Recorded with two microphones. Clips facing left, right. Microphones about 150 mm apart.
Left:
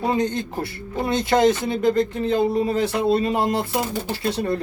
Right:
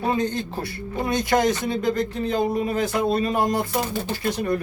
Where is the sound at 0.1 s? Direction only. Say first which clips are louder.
Left 2 dB; 20° left (ahead or behind).